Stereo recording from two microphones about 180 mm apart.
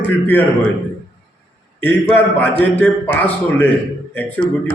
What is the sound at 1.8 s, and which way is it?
A man's voice, 10° left (ahead or behind).